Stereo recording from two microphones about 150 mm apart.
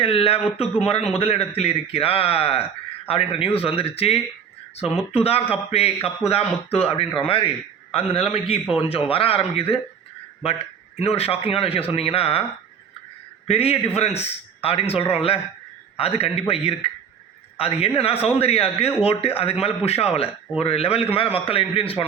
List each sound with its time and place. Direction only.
0.0 s a man's voice: 40° left (ahead or behind)
8.7 s a man's voice: 40° left (ahead or behind)
11.0 s a man's voice: 40° left (ahead or behind)
13.5 s a man's voice: 40° left (ahead or behind)